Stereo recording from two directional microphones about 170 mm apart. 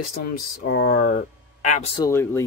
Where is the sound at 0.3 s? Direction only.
70° left (ahead or behind); by 1.9 s 45° left (ahead or behind).